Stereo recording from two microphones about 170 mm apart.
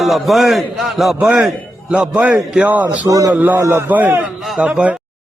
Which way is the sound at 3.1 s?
20° right (ahead or behind).